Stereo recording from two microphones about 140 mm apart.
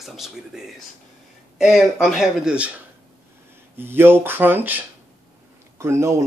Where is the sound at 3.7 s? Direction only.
15° right (ahead or behind).